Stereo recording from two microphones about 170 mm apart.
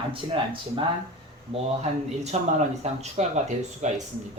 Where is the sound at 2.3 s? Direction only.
40° right (ahead or behind).